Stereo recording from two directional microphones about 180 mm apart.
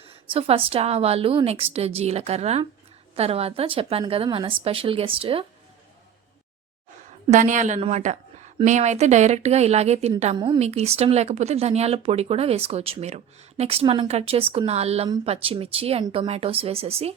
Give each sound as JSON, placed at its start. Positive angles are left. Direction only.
{"t": 0.0, "sound": "speech", "side_deg": -30}
{"t": 7.3, "sound": "a woman's voice", "side_deg": -45}